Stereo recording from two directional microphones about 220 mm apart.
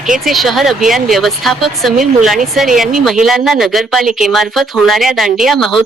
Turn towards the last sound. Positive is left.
turn(degrees=0)  # may be behind; listen again after turning